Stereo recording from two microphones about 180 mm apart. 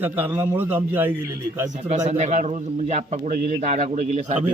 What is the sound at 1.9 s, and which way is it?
A man's voice, 40° right (ahead or behind).